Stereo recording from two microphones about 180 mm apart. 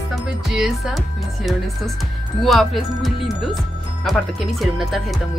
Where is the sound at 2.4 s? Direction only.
Centre (ahead or behind).